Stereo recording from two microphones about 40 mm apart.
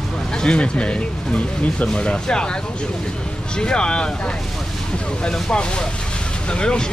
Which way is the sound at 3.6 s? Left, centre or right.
Left.